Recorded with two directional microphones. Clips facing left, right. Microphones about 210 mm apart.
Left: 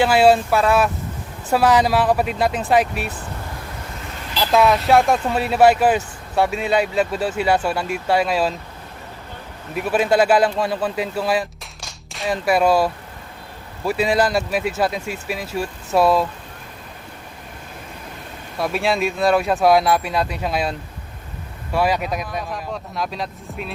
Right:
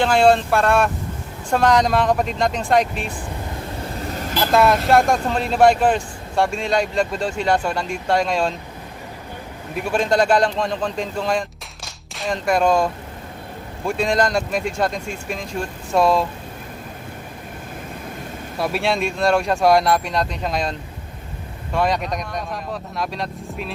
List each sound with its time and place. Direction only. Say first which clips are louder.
0.0 s speech: left 1 dB; 5° left (ahead or behind)
4.0 s vehicle: right 6 dB; 40° right (ahead or behind)
4.4 s speech: even; centre (ahead or behind)
9.7 s a man's voice: left 2 dB; 5° left (ahead or behind)
18.5 s speech: left 1 dB; centre (ahead or behind)